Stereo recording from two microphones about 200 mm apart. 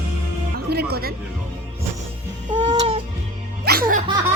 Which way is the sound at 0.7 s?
50° right (ahead or behind).